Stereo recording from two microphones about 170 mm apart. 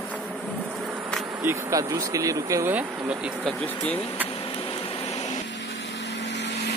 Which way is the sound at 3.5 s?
10° left (ahead or behind).